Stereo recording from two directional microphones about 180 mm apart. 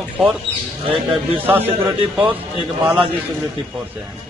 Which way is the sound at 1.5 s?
10° right (ahead or behind).